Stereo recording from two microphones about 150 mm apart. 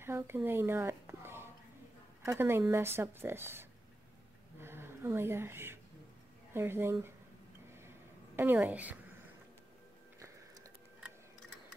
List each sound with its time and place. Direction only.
0.0 s a sound: 15° right (ahead or behind)
2.2 s a woman's voice: 15° right (ahead or behind)
4.6 s a sound: 15° right (ahead or behind)
6.5 s a woman's voice: 15° right (ahead or behind)
8.4 s a woman's voice: 15° right (ahead or behind)
10.1 s biting: 20° right (ahead or behind)